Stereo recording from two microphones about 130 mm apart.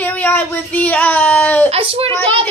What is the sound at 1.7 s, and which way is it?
Speech, 45° right (ahead or behind).